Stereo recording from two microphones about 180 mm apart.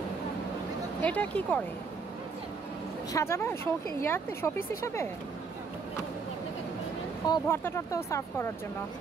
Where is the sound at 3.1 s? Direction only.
15° left (ahead or behind).